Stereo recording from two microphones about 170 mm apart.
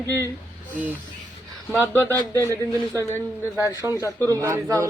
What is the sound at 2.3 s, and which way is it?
Speech, 15° right (ahead or behind).